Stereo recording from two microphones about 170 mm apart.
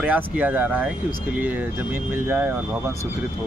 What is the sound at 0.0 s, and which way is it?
A man's voice, 10° right (ahead or behind).